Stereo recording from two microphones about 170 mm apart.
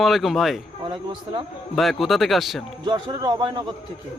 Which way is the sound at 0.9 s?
30° right (ahead or behind).